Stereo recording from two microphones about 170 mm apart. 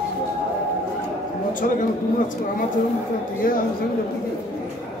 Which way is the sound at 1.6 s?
55° left (ahead or behind).